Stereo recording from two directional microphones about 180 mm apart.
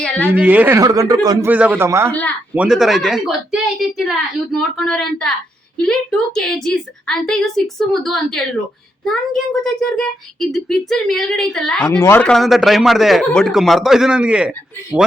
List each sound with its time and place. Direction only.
0.3 s a man's voice: 10° right (ahead or behind)
1.5 s a man's voice: 10° right (ahead or behind)
2.6 s a child's voice: 5° right (ahead or behind)
11.9 s a child's voice: 15° left (ahead or behind); by 14.5 s 5° right (ahead or behind)